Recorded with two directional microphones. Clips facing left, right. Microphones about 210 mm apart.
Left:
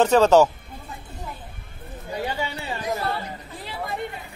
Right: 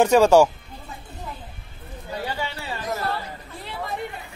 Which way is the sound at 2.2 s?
15° left (ahead or behind).